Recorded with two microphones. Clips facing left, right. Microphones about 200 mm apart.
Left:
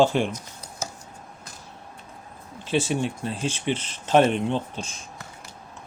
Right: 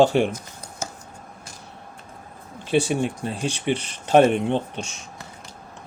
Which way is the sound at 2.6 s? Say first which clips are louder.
Right 3 dB; 55° right (ahead or behind).